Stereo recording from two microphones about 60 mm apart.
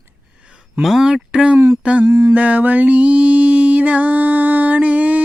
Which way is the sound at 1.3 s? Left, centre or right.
Centre.